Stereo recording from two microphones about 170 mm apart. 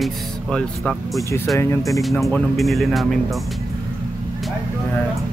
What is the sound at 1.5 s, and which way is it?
Speech, 15° left (ahead or behind).